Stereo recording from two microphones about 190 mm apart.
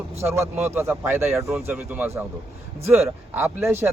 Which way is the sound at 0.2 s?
15° right (ahead or behind).